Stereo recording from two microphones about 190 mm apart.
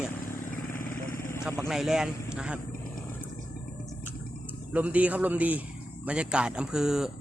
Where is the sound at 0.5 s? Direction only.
45° left (ahead or behind).